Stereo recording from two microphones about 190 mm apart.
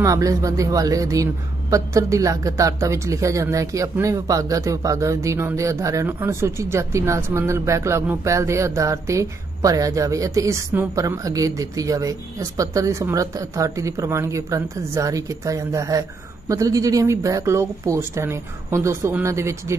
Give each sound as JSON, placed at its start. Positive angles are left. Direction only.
{"t": 0.0, "sound": "a woman's voice", "side_deg": -15}